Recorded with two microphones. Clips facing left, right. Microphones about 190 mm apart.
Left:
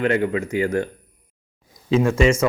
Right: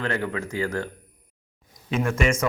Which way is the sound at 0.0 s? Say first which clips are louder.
Left 7 dB; 20° left (ahead or behind).